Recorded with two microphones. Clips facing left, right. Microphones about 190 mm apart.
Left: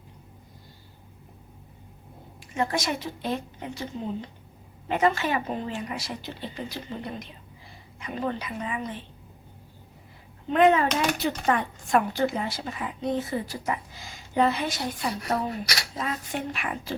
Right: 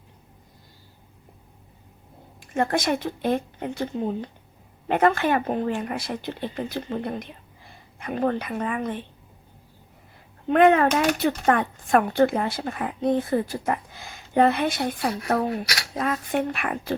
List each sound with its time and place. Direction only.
2.6 s speech: 55° right (ahead or behind)
10.5 s speech: 60° right (ahead or behind)